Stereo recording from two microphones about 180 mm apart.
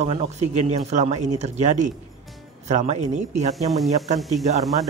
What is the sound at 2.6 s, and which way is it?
A man's voice, 40° right (ahead or behind).